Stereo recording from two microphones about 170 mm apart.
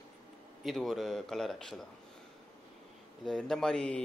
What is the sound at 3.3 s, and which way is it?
Speech, 5° left (ahead or behind).